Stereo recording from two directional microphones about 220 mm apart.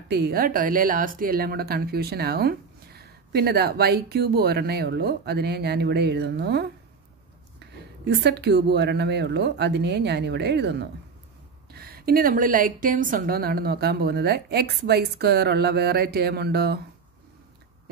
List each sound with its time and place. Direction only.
0.1 s speech: 45° right (ahead or behind)